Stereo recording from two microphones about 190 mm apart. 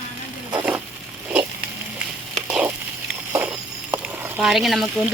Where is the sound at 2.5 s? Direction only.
5° right (ahead or behind).